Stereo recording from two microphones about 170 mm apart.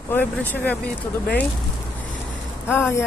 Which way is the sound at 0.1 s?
10° left (ahead or behind).